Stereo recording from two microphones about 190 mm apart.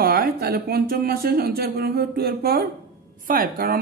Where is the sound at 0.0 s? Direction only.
55° right (ahead or behind).